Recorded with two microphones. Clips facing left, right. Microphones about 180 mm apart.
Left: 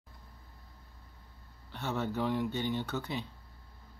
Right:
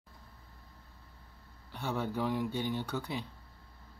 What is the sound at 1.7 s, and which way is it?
Speech, 10° right (ahead or behind).